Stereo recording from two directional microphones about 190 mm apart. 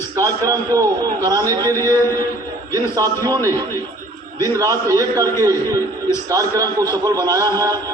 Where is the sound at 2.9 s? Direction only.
20° right (ahead or behind).